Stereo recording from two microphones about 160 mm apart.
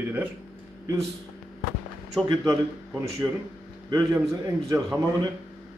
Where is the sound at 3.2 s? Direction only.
15° right (ahead or behind).